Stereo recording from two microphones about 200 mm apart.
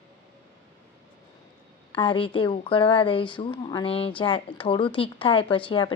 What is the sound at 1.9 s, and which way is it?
Speech, 25° left (ahead or behind).